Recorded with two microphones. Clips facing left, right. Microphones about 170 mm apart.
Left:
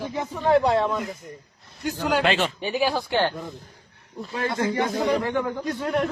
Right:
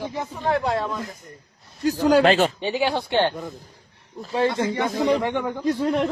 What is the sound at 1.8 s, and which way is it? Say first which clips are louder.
Speech: right 6 dB; 35° right (ahead or behind).